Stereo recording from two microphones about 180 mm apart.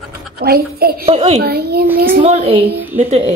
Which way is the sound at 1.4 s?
60° right (ahead or behind).